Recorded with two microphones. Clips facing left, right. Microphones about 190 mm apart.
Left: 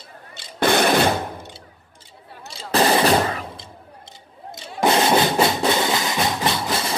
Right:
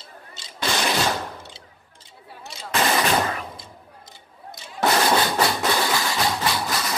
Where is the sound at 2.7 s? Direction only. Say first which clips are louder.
Left 5 dB; 35° left (ahead or behind).